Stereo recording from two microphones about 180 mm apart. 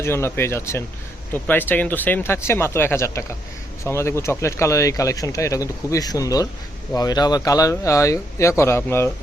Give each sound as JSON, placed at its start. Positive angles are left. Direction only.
{"t": 0.0, "sound": "speech", "side_deg": 15}